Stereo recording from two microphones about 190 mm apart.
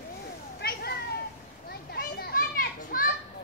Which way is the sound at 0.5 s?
55° left (ahead or behind).